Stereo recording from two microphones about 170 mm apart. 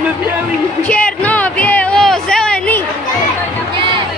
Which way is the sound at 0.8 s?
10° left (ahead or behind).